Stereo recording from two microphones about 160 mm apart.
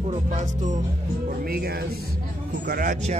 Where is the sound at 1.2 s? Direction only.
70° right (ahead or behind).